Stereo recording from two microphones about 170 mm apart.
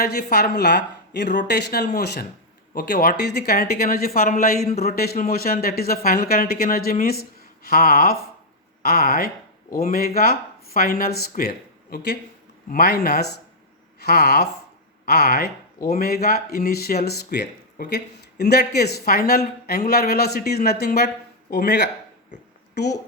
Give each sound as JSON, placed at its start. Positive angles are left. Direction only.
{"t": 0.0, "sound": "a woman's voice", "side_deg": 70}
{"t": 1.4, "sound": "a woman's voice", "side_deg": 80}
{"t": 2.7, "sound": "speech", "side_deg": 65}
{"t": 14.0, "sound": "speech", "side_deg": 70}
{"t": 21.5, "sound": "a woman's voice", "side_deg": 80}